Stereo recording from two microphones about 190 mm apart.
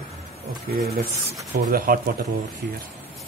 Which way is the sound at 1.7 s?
50° right (ahead or behind).